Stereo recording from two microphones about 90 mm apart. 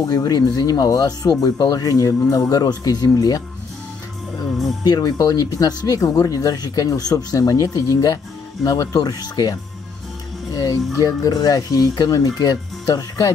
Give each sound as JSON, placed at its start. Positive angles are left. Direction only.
{"t": 0.0, "sound": "speech", "side_deg": 45}
{"t": 4.8, "sound": "speech", "side_deg": 45}
{"t": 10.5, "sound": "music", "side_deg": 45}
{"t": 11.0, "sound": "speech", "side_deg": 45}